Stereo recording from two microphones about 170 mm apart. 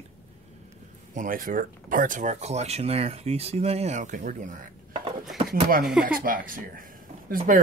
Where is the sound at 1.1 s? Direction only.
50° right (ahead or behind).